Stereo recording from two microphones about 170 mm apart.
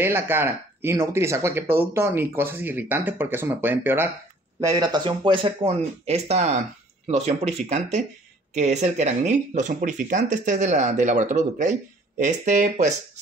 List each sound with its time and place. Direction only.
0.0 s speech: 15° right (ahead or behind); by 13.2 s 45° right (ahead or behind)